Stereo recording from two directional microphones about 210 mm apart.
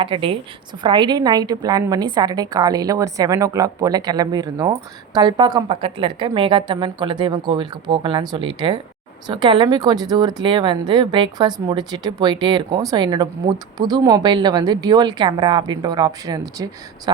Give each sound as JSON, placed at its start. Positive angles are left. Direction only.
{"t": 0.0, "sound": "a woman's voice", "side_deg": -25}